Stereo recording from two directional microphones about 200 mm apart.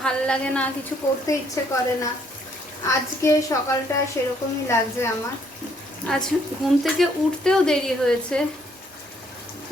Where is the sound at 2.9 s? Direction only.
15° left (ahead or behind).